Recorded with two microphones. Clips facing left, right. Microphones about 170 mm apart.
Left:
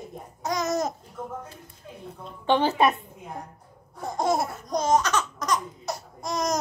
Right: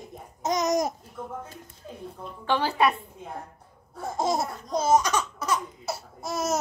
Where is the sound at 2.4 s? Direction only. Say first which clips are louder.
Left 3 dB; 20° left (ahead or behind).